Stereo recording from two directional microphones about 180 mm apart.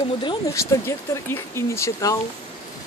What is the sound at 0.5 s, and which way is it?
Speech, 15° left (ahead or behind).